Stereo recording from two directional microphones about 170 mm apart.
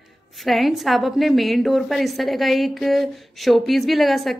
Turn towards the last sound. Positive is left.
turn(degrees=0)  # may be behind; listen again after turning